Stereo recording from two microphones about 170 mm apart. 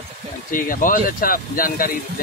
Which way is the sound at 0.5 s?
55° left (ahead or behind).